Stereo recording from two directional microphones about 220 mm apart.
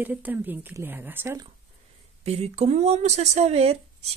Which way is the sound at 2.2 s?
30° right (ahead or behind).